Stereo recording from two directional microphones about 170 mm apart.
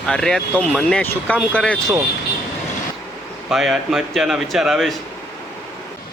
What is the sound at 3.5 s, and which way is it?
Speech, 5° right (ahead or behind).